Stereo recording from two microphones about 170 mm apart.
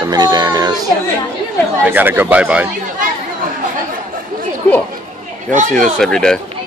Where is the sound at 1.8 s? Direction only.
10° right (ahead or behind).